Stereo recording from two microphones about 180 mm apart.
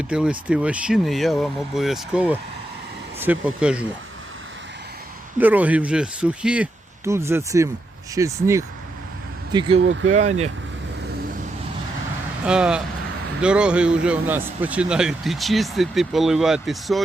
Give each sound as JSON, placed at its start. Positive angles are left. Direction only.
{"t": 0.1, "sound": "a man's voice", "side_deg": -5}
{"t": 5.4, "sound": "a man's voice", "side_deg": -10}
{"t": 9.8, "sound": "speech", "side_deg": -90}
{"t": 10.1, "sound": "speech", "side_deg": -40}
{"t": 12.5, "sound": "a man's voice", "side_deg": -5}